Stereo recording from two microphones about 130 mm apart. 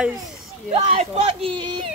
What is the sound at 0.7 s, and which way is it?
Speech, 50° right (ahead or behind).